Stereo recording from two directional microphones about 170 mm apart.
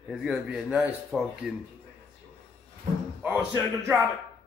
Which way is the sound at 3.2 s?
15° right (ahead or behind).